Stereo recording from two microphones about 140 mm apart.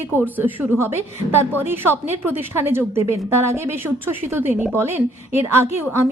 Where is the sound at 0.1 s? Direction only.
15° right (ahead or behind).